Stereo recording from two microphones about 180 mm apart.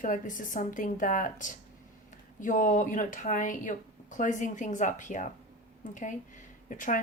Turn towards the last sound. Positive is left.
turn(degrees=45)  # may be behind; listen again after turning